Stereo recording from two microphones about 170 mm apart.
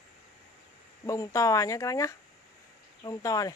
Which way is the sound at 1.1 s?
20° left (ahead or behind).